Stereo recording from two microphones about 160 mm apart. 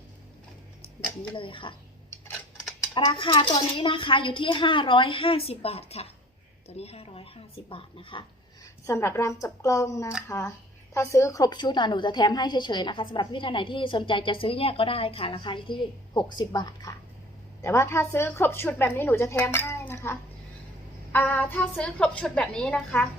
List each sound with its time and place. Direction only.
1.4 s a woman's voice: 30° left (ahead or behind)
2.9 s a woman's voice: 30° left (ahead or behind)
8.9 s a woman's voice: 15° left (ahead or behind)